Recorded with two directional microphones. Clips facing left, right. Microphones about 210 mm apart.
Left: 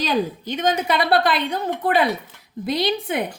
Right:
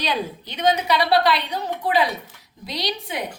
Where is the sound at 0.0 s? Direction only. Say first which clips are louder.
Left 4 dB; 45° left (ahead or behind).